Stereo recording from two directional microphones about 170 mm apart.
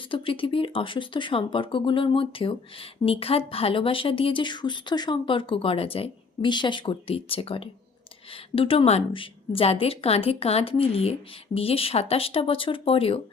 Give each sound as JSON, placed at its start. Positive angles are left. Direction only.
{"t": 0.1, "sound": "speech", "side_deg": 30}